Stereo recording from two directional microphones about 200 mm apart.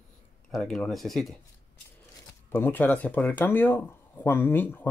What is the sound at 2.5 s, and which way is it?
Speech, 10° left (ahead or behind).